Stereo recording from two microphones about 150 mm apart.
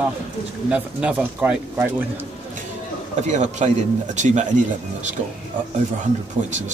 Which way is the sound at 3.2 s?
50° right (ahead or behind).